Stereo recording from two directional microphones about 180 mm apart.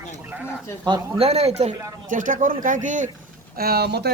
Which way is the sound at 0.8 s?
25° right (ahead or behind).